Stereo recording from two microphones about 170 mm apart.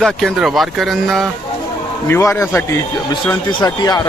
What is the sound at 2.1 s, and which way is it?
A man's voice, 15° left (ahead or behind).